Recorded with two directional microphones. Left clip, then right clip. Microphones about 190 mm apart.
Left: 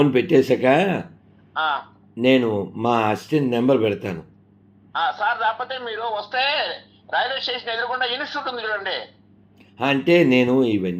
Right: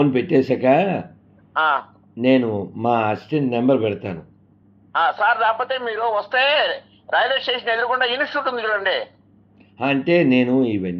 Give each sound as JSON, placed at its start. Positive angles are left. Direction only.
{"t": 0.0, "sound": "a man's voice", "side_deg": 0}
{"t": 2.1, "sound": "speech", "side_deg": 5}
{"t": 5.0, "sound": "a man's voice", "side_deg": -30}
{"t": 9.7, "sound": "a man's voice", "side_deg": 5}